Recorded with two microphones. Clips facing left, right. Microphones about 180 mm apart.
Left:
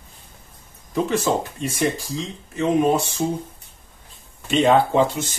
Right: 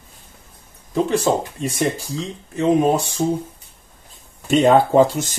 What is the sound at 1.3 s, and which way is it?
Speech, 40° right (ahead or behind).